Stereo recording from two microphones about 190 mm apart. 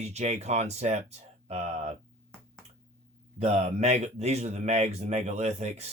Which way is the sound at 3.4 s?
35° right (ahead or behind).